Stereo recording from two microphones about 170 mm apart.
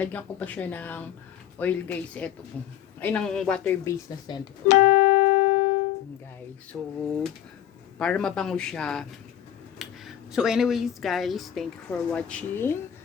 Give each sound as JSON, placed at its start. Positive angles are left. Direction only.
{"t": 0.0, "sound": "speech", "side_deg": 10}
{"t": 4.3, "sound": "speech", "side_deg": 25}
{"t": 4.7, "sound": "keyboard", "side_deg": 45}
{"t": 6.7, "sound": "speech", "side_deg": 5}
{"t": 7.9, "sound": "speech", "side_deg": 5}